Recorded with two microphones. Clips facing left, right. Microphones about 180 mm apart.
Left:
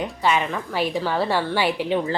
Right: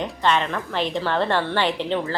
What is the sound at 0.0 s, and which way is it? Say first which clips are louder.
A woman's voice: even; 10° left (ahead or behind).